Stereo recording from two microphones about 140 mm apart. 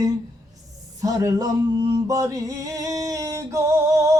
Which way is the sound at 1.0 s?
25° right (ahead or behind).